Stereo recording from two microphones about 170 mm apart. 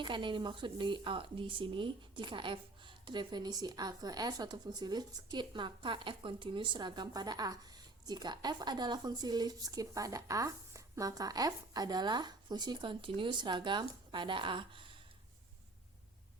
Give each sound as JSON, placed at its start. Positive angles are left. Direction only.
{"t": 0.0, "sound": "speech", "side_deg": -30}